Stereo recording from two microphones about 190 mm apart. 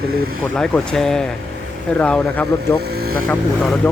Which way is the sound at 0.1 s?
50° right (ahead or behind).